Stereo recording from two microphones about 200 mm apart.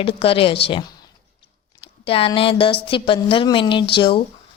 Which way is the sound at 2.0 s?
30° left (ahead or behind).